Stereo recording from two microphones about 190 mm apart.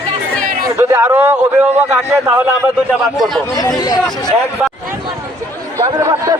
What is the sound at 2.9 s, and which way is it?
Speech, centre (ahead or behind).